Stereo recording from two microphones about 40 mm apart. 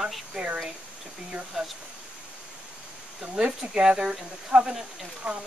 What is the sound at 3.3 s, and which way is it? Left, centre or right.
Speech, right.